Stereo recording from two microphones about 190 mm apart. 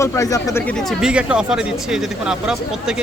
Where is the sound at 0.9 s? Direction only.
5° right (ahead or behind).